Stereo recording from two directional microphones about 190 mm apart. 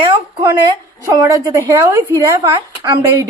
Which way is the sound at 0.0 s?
25° right (ahead or behind).